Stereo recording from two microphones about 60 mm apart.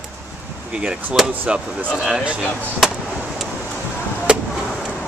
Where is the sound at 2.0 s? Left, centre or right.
Centre.